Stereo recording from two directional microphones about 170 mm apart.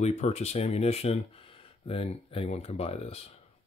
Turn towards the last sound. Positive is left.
turn(degrees=35)  # may be behind; listen again after turning